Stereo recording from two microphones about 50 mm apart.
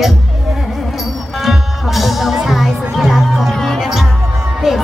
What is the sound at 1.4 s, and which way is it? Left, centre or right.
Music, centre.